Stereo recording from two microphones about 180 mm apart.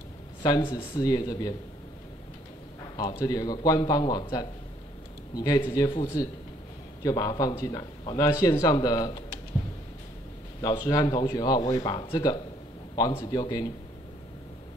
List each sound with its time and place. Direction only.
0.4 s speech: 25° left (ahead or behind)
3.0 s speech: 20° left (ahead or behind)
8.0 s a man's voice: 30° left (ahead or behind)
8.4 s speech: 20° left (ahead or behind)
10.6 s speech: 20° left (ahead or behind)